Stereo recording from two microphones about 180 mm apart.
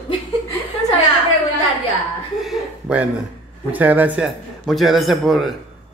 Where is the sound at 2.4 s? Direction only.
5° right (ahead or behind).